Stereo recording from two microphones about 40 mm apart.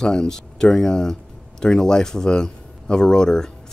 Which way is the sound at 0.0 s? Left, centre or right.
Centre.